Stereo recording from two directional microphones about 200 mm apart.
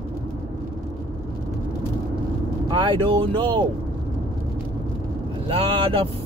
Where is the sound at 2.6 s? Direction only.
25° right (ahead or behind).